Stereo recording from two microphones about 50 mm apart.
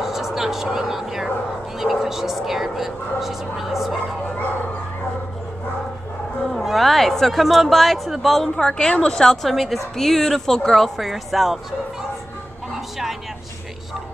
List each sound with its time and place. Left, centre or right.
0.0 s a sound: centre
1.8 s speech: centre
6.5 s speech: centre
8.5 s a woman's voice: left; by 11.6 s centre